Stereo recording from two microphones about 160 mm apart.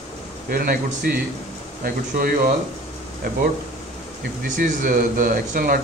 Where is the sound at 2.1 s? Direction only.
60° right (ahead or behind).